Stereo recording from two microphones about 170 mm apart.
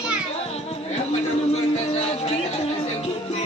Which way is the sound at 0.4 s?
35° left (ahead or behind).